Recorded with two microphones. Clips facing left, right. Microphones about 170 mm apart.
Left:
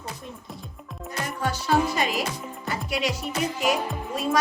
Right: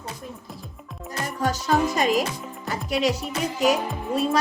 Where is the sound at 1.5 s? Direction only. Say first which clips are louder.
Right 3 dB; 40° right (ahead or behind).